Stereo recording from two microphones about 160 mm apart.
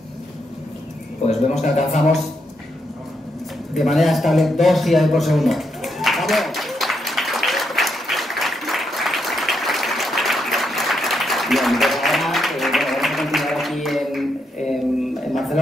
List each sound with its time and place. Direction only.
1.2 s a man's voice: 45° left (ahead or behind)
3.7 s a sound: centre (ahead or behind)
15.3 s music: centre (ahead or behind)